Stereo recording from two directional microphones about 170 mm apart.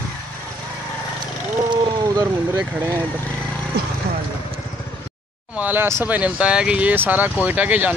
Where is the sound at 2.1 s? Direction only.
20° right (ahead or behind).